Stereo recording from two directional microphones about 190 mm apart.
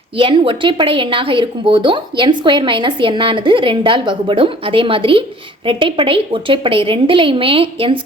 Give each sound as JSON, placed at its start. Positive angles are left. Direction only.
{"t": 0.2, "sound": "speech", "side_deg": -25}